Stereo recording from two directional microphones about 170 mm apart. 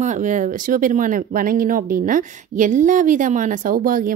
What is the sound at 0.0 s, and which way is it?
Speech, 45° right (ahead or behind).